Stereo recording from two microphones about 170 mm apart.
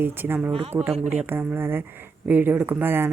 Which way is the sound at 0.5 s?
35° right (ahead or behind).